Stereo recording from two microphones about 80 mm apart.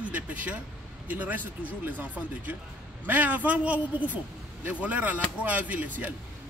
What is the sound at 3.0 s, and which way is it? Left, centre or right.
A man's voice, right.